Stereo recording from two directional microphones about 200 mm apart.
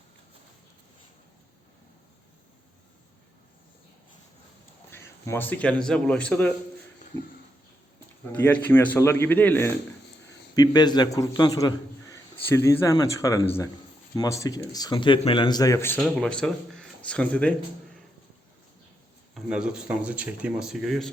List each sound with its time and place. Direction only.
4.9 s speech: 15° left (ahead or behind)
8.3 s speech: 10° left (ahead or behind)
19.3 s speech: 5° right (ahead or behind)